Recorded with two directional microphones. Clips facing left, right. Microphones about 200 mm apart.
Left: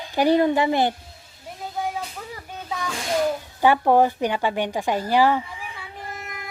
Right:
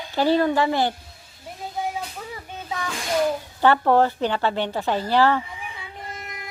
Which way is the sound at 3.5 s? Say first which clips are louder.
Left 1 dB; 15° left (ahead or behind).